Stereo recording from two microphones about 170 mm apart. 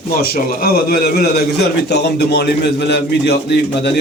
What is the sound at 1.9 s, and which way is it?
A man's voice, 75° left (ahead or behind).